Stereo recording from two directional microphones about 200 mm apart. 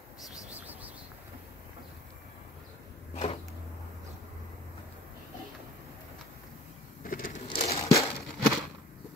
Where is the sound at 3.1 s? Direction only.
30° left (ahead or behind).